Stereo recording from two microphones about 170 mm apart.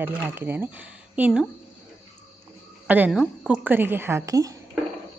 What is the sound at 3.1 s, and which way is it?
Speech, centre (ahead or behind).